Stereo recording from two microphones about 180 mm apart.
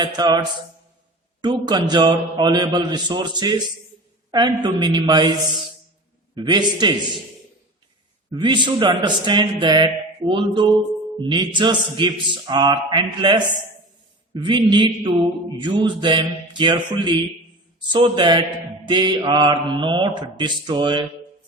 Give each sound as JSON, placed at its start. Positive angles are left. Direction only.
{"t": 0.0, "sound": "a man's voice", "side_deg": -25}
{"t": 8.3, "sound": "a man's voice", "side_deg": -25}